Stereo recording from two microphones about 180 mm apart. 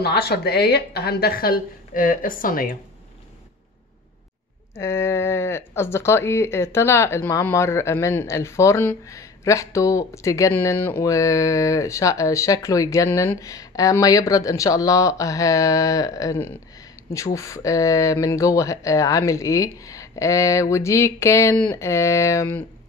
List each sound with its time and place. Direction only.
0.0 s a woman's voice: 65° left (ahead or behind)
4.7 s speech: 15° left (ahead or behind)